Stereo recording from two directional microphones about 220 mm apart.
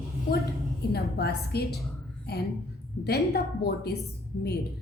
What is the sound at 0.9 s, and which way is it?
A woman's voice, 45° left (ahead or behind).